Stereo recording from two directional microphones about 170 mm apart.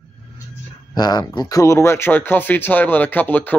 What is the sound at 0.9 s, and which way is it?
Speech, 25° left (ahead or behind).